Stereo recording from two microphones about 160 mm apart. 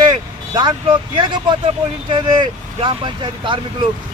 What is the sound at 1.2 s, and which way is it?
Speech, 30° right (ahead or behind).